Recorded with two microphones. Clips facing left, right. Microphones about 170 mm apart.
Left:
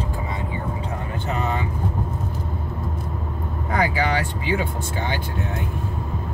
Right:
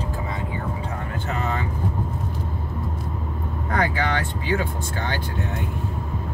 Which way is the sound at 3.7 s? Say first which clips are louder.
Left 2 dB; 10° left (ahead or behind).